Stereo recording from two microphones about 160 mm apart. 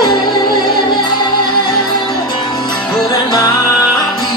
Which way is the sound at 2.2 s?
25° left (ahead or behind).